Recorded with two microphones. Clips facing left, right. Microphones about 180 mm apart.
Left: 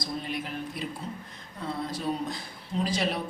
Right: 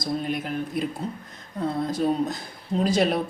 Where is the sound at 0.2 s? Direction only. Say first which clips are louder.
Right 6 dB; 50° right (ahead or behind).